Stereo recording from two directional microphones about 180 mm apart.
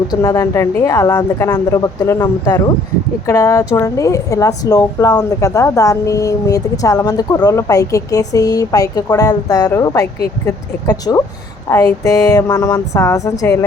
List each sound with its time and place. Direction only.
0.1 s a woman's voice: 15° left (ahead or behind)